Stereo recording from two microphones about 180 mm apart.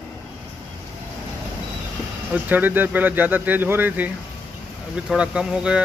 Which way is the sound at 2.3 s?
10° right (ahead or behind).